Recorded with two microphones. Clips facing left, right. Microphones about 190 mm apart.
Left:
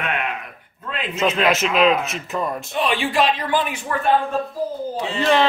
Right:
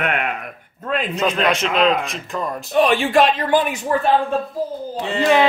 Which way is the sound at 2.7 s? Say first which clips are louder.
Right 6 dB; 45° right (ahead or behind).